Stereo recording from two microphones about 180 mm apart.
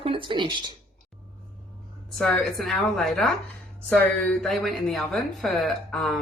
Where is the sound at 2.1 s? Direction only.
Centre (ahead or behind).